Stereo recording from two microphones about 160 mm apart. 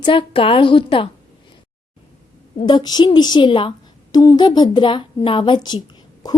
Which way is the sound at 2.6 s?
25° left (ahead or behind).